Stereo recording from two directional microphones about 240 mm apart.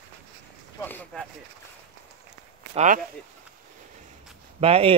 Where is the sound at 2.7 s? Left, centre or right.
Right.